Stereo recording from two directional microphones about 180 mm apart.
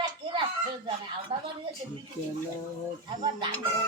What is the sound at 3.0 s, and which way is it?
Speech, 25° right (ahead or behind).